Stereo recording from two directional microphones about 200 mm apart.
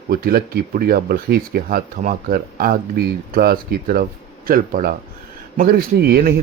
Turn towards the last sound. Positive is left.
turn(degrees=-50)  # may be behind; listen again after turning